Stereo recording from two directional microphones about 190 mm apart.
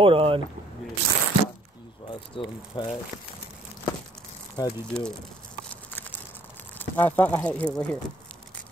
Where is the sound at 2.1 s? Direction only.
25° left (ahead or behind).